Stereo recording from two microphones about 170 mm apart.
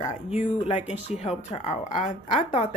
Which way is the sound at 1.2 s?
40° left (ahead or behind).